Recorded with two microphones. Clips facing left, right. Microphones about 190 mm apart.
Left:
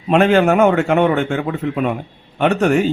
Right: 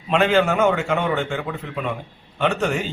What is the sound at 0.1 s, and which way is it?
Speech, 55° left (ahead or behind).